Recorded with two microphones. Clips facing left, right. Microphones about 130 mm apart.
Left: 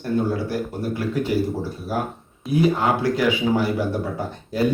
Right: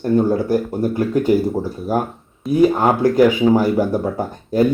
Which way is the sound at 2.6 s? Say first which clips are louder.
Right 5 dB; 45° right (ahead or behind).